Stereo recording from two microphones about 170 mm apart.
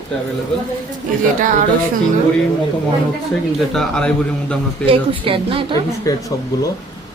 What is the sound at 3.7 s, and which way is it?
Speech, 5° left (ahead or behind).